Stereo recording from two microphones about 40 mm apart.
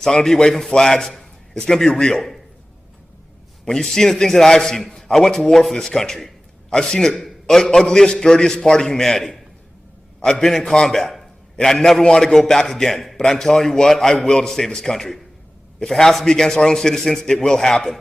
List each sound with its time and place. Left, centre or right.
0.0 s a man's voice: centre
3.6 s a man's voice: centre
10.7 s a man's voice: centre